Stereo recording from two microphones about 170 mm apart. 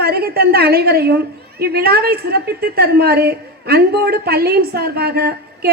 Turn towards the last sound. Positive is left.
turn(degrees=-65)  # may be behind; listen again after turning